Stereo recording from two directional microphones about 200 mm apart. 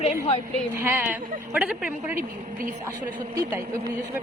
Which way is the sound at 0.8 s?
10° right (ahead or behind).